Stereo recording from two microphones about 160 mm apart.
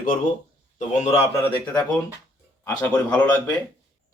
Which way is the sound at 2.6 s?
10° left (ahead or behind).